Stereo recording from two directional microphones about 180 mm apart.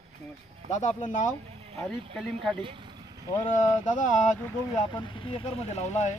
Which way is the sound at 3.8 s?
45° left (ahead or behind).